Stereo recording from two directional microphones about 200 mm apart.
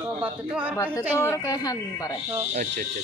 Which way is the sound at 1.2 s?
15° left (ahead or behind).